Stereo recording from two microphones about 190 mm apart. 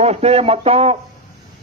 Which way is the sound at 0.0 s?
35° right (ahead or behind).